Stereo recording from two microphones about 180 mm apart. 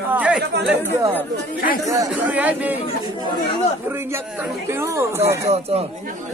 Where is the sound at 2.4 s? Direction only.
10° right (ahead or behind).